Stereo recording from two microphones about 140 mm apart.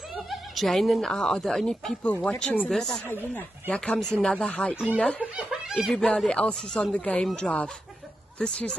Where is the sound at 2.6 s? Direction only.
Centre (ahead or behind).